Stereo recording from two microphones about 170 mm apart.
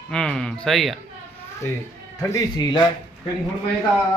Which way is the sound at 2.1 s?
20° left (ahead or behind).